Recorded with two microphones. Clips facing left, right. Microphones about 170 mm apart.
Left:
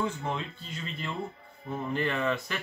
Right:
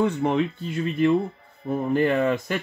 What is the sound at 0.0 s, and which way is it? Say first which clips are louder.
Speech: right 11 dB; 65° right (ahead or behind).